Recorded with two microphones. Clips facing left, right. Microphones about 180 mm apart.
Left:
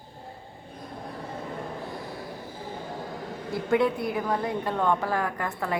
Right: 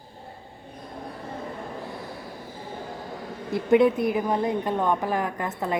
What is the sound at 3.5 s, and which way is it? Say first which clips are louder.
A woman's voice: right 5 dB; 20° right (ahead or behind).